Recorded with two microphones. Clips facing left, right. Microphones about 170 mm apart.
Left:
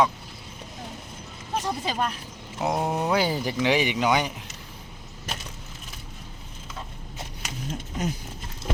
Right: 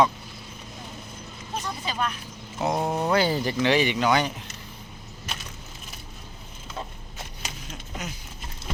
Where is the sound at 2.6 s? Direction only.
5° left (ahead or behind).